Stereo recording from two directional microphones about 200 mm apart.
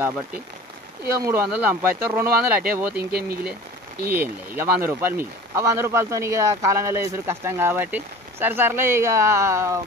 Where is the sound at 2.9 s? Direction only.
50° right (ahead or behind).